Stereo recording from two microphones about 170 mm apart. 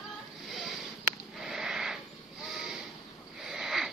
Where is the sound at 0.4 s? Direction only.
Centre (ahead or behind).